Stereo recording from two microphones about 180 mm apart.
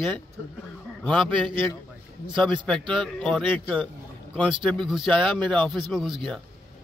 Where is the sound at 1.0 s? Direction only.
5° left (ahead or behind).